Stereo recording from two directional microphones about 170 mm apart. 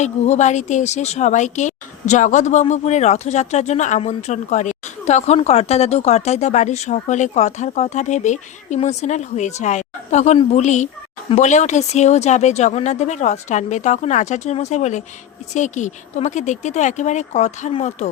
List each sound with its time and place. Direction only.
0.0 s speech: 45° left (ahead or behind)